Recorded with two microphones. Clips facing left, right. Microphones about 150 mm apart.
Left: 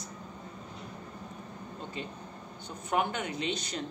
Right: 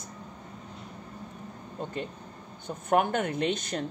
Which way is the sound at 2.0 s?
55° right (ahead or behind).